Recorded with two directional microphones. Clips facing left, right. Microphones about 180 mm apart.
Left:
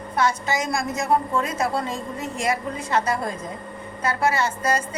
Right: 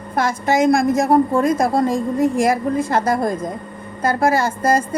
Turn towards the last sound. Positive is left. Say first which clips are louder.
# right 6 dB
turn(degrees=-50)  # may be behind; listen again after turning